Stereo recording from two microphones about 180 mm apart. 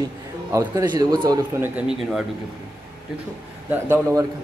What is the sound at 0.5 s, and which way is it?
A man's voice, 20° right (ahead or behind).